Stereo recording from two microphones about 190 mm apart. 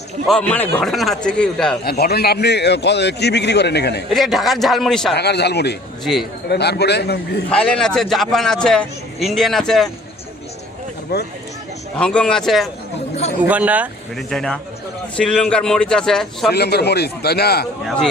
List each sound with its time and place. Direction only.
0.3 s a man's voice: 5° left (ahead or behind)
1.8 s a man's voice: 55° left (ahead or behind)
4.1 s a man's voice: centre (ahead or behind)
5.1 s a man's voice: 60° left (ahead or behind)
7.5 s a man's voice: 5° left (ahead or behind)
11.1 s a man's voice: 60° left (ahead or behind)
11.9 s a man's voice: 5° left (ahead or behind)
14.3 s a man's voice: 5° left (ahead or behind)
16.5 s a man's voice: 55° left (ahead or behind)
17.8 s a man's voice: 5° left (ahead or behind)